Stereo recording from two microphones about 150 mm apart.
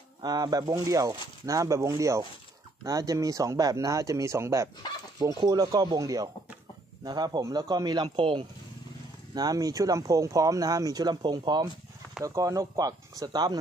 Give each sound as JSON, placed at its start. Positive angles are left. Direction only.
{"t": 0.2, "sound": "speech", "side_deg": -25}